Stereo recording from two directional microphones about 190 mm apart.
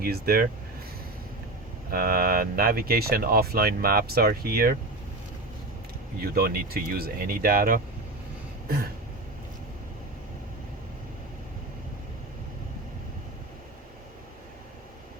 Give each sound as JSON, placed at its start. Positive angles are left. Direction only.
{"t": 0.0, "sound": "speech", "side_deg": -50}
{"t": 1.9, "sound": "speech", "side_deg": -50}
{"t": 6.2, "sound": "speech", "side_deg": -50}